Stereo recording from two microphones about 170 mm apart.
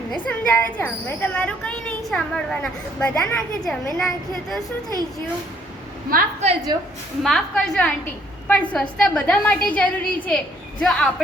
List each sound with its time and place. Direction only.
0.3 s a woman's voice: 10° left (ahead or behind)
6.1 s a woman's voice: 55° right (ahead or behind)
6.7 s a woman's voice: 25° right (ahead or behind)
7.2 s a woman's voice: centre (ahead or behind)